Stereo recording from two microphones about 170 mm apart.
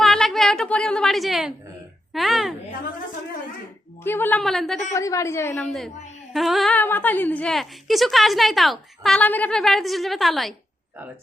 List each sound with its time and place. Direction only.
0.0 s a woman's voice: centre (ahead or behind)
4.0 s a woman's voice: 10° left (ahead or behind)
4.9 s a woman's voice: 20° left (ahead or behind)
5.6 s a woman's voice: centre (ahead or behind)